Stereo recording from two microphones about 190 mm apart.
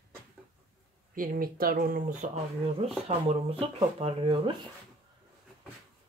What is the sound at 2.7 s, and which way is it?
Speech, 30° right (ahead or behind).